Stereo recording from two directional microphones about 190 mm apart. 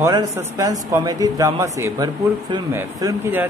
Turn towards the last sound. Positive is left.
turn(degrees=-15)  # may be behind; listen again after turning